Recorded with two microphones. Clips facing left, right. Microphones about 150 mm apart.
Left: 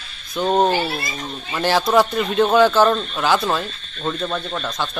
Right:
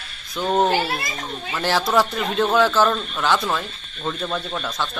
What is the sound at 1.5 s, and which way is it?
Speech, centre (ahead or behind).